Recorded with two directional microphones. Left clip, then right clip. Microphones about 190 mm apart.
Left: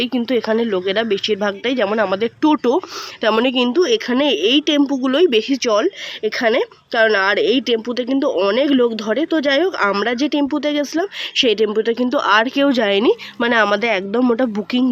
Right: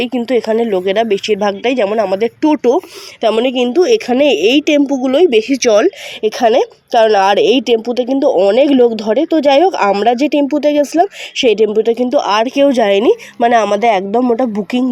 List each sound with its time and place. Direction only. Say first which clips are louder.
0.0 s speech: right 4 dB; 40° left (ahead or behind)
0.5 s a woman's voice: right 5 dB; 5° right (ahead or behind)
1.9 s a woman's voice: right 4 dB; 5° left (ahead or behind)